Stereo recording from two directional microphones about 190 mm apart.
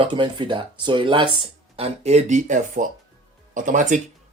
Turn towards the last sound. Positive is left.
turn(degrees=-40)  # may be behind; listen again after turning